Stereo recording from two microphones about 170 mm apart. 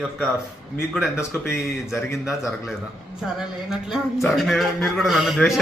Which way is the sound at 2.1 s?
Centre (ahead or behind).